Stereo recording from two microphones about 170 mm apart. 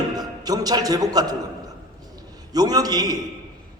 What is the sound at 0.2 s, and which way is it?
Speech, 20° right (ahead or behind).